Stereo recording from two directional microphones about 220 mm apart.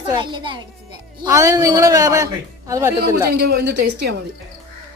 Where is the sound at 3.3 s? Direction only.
45° right (ahead or behind).